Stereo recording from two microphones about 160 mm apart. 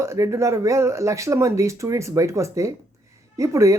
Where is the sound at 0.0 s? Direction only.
20° right (ahead or behind).